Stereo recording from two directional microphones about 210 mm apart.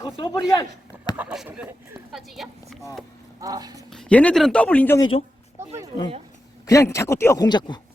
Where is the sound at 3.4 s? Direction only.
15° right (ahead or behind).